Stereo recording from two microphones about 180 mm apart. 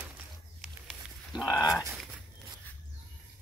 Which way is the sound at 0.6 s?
Centre (ahead or behind).